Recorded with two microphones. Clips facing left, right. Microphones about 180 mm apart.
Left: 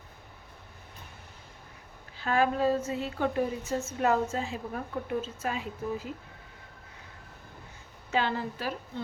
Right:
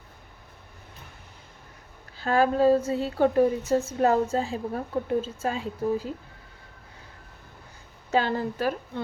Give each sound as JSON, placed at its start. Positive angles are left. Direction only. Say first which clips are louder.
{"t": 2.1, "sound": "a woman's voice", "louder": "right 4 dB", "side_deg": -35}
{"t": 8.1, "sound": "a woman's voice", "louder": "right 5 dB", "side_deg": -45}